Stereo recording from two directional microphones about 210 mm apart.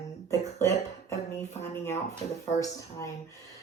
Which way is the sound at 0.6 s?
10° left (ahead or behind).